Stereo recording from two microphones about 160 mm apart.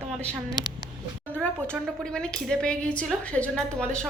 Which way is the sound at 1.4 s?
5° left (ahead or behind).